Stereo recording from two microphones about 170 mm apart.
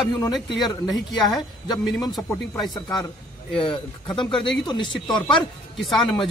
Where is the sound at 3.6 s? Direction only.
30° left (ahead or behind).